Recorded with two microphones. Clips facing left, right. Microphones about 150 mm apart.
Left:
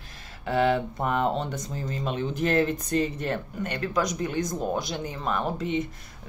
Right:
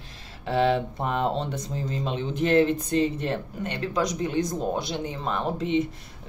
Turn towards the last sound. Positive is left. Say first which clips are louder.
# right 2 dB
turn(degrees=-25)  # may be behind; listen again after turning